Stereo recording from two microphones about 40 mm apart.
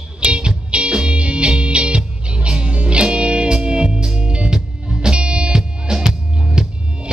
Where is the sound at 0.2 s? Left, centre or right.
Right.